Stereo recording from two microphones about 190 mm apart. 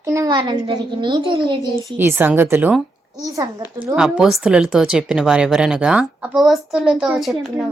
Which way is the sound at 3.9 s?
5° right (ahead or behind).